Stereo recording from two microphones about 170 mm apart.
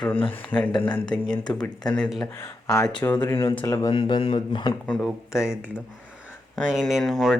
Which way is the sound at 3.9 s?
30° left (ahead or behind).